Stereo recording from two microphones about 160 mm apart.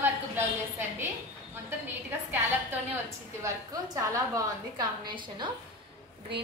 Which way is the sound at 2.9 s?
20° right (ahead or behind).